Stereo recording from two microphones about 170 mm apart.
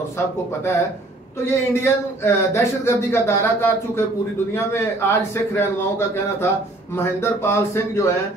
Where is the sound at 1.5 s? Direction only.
15° left (ahead or behind).